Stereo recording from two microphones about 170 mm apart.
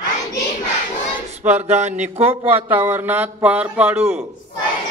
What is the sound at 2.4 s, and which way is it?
A man's voice, 10° right (ahead or behind).